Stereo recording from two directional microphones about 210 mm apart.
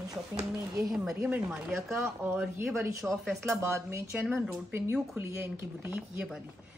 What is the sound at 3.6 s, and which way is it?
Speech, 10° right (ahead or behind).